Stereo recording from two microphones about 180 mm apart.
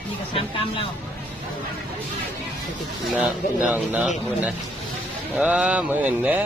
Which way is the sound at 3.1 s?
5° right (ahead or behind).